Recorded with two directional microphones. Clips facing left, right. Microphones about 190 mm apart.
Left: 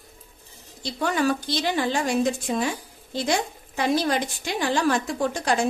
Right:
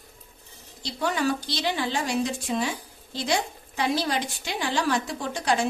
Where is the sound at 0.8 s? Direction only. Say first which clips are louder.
Left 3 dB; 50° left (ahead or behind).